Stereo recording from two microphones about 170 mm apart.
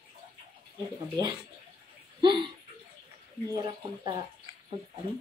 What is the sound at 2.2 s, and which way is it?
Speech, 30° right (ahead or behind).